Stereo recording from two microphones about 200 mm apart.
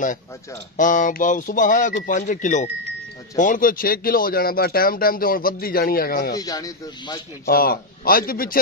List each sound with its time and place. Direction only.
0.7 s speech: 40° left (ahead or behind)
6.3 s speech: 15° left (ahead or behind)
7.4 s speech: 50° left (ahead or behind)